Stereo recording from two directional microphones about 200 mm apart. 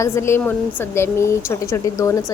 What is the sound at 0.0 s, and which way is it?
Speech, 15° left (ahead or behind).